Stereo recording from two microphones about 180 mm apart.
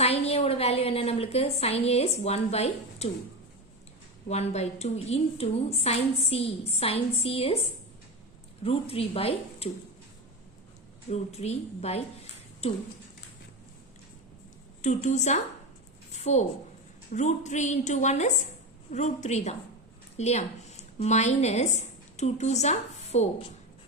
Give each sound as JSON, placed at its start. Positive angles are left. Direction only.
{"t": 0.0, "sound": "a sound", "side_deg": 35}
{"t": 4.3, "sound": "a woman's voice", "side_deg": 35}
{"t": 8.6, "sound": "a woman's voice", "side_deg": 30}
{"t": 11.1, "sound": "a woman's voice", "side_deg": 35}
{"t": 14.8, "sound": "a woman's voice", "side_deg": 40}